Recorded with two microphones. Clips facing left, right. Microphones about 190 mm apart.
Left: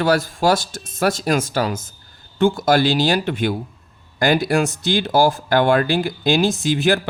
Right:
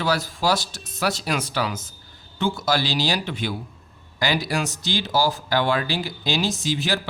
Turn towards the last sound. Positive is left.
turn(degrees=55)  # may be behind; listen again after turning